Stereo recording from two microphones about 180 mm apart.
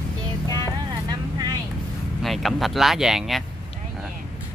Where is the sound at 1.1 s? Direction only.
20° right (ahead or behind).